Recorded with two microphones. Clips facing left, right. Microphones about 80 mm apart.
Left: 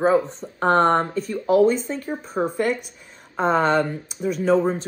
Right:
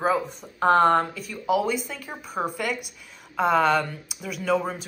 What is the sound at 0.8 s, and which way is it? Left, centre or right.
Speech, left.